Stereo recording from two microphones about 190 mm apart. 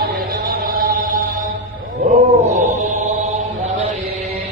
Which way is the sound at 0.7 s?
45° right (ahead or behind).